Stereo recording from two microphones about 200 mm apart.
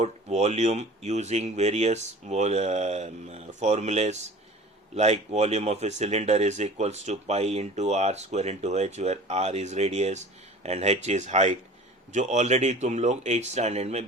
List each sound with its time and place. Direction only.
0.0 s speech: 35° right (ahead or behind)